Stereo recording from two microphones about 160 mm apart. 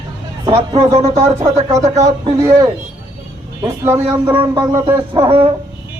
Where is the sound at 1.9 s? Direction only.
20° right (ahead or behind).